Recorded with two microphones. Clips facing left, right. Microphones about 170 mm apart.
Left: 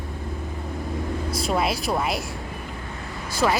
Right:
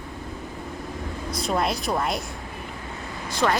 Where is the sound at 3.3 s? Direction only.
5° left (ahead or behind).